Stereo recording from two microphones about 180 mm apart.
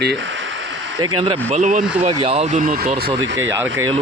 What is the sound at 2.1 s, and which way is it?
Speech, 25° right (ahead or behind).